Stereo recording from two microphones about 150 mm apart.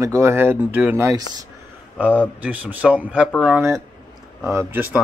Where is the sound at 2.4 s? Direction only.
10° right (ahead or behind).